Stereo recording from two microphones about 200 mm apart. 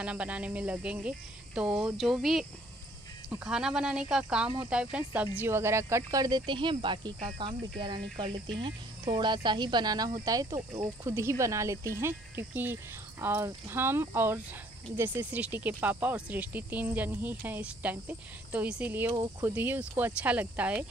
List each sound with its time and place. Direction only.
0.0 s speech: 5° right (ahead or behind)
3.4 s speech: 5° right (ahead or behind); by 7.2 s 25° right (ahead or behind)
8.2 s speech: 25° right (ahead or behind); by 20.8 s 5° right (ahead or behind)